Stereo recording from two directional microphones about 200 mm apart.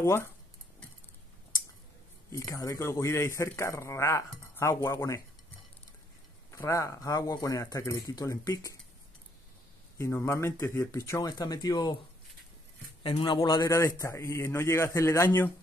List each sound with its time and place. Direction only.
0.0 s a man's voice: 15° left (ahead or behind)
2.3 s a man's voice: 15° left (ahead or behind)
6.5 s a man's voice: 15° left (ahead or behind)
9.9 s a man's voice: 15° left (ahead or behind)
13.0 s a man's voice: 25° left (ahead or behind)